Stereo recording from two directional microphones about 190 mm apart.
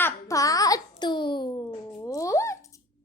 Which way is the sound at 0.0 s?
15° left (ahead or behind).